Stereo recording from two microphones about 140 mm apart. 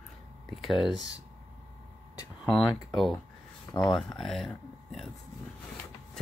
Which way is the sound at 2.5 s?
Centre (ahead or behind).